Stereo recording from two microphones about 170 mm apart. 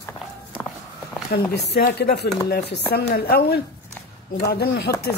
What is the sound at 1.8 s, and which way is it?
Speech, 70° left (ahead or behind).